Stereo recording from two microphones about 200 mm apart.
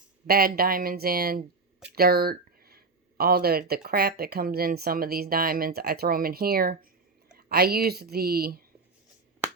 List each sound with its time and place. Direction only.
0.3 s speech: 50° right (ahead or behind)